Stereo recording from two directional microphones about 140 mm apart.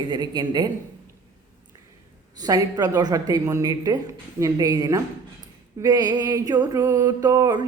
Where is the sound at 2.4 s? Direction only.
30° right (ahead or behind).